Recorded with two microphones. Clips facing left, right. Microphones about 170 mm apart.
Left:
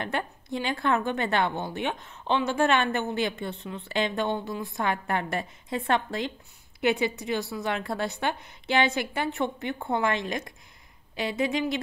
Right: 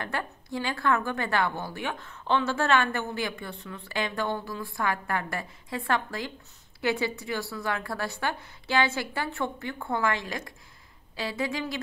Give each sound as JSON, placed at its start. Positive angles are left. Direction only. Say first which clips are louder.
{"t": 0.0, "sound": "a woman's voice", "louder": "left 2 dB", "side_deg": 20}